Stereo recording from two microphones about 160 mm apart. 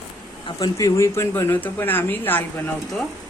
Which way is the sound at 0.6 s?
20° left (ahead or behind).